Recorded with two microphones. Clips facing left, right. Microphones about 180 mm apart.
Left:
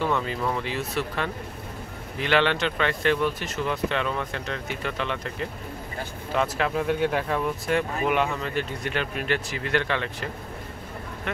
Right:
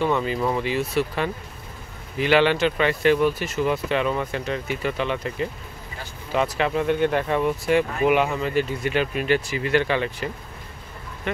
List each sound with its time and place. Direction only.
0.0 s speech: centre (ahead or behind)